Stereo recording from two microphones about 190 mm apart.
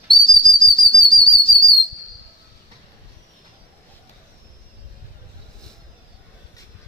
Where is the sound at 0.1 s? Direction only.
25° left (ahead or behind).